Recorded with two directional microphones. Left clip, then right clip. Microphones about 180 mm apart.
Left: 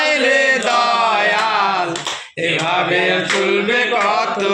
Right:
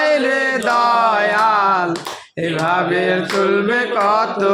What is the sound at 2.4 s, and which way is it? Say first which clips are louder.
Mantra: even; 55° right (ahead or behind).